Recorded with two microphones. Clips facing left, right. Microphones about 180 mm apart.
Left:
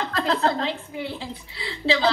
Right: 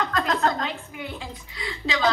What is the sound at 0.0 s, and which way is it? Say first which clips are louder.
A woman's voice: left 1 dB; 30° left (ahead or behind).